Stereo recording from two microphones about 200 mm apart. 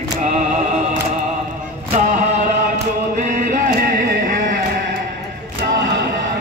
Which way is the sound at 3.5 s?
50° right (ahead or behind).